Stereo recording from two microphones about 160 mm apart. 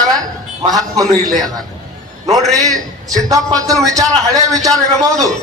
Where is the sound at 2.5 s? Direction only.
20° right (ahead or behind).